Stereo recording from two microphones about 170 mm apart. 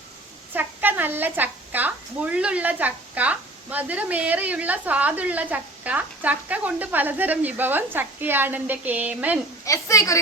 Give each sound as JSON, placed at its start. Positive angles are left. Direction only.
{"t": 0.5, "sound": "a woman's voice", "side_deg": -10}
{"t": 9.6, "sound": "a woman's voice", "side_deg": 20}